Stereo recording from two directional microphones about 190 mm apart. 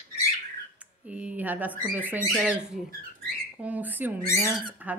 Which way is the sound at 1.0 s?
5° right (ahead or behind).